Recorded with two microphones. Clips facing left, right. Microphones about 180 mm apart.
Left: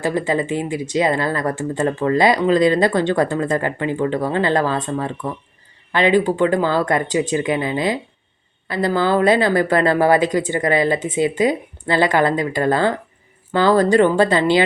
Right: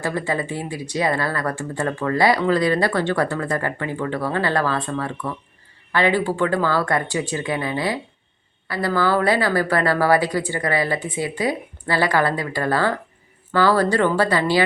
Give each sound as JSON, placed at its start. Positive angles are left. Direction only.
{"t": 0.0, "sound": "speech", "side_deg": 20}